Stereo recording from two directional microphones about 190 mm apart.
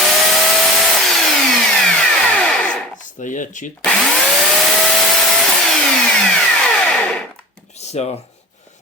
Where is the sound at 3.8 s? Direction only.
5° left (ahead or behind).